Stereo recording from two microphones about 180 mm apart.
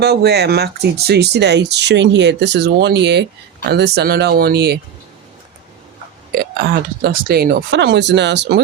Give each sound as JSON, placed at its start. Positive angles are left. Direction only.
{"t": 0.0, "sound": "speech", "side_deg": -65}
{"t": 6.3, "sound": "speech", "side_deg": -60}